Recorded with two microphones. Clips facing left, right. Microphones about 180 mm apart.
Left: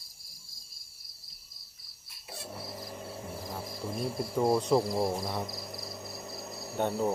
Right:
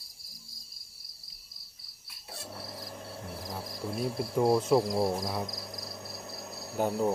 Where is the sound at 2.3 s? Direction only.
10° left (ahead or behind).